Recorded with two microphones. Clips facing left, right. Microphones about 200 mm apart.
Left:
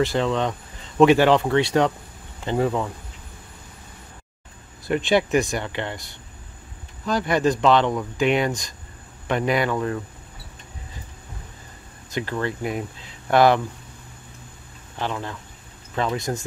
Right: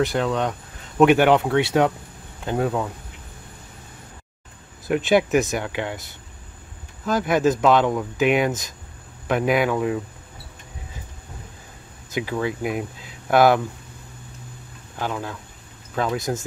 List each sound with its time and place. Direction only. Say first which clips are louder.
0.0 s speech: even; centre (ahead or behind)
4.8 s speech: right 2 dB; centre (ahead or behind)
12.1 s speech: right 1 dB; 5° right (ahead or behind)
15.0 s speech: right 1 dB; 5° right (ahead or behind)